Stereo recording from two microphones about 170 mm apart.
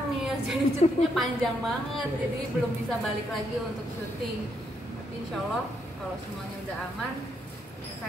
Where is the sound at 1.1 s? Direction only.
Centre (ahead or behind).